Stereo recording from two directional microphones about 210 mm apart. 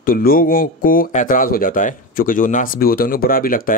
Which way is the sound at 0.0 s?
45° left (ahead or behind).